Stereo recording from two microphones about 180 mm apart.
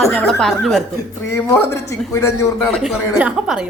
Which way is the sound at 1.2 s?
15° left (ahead or behind).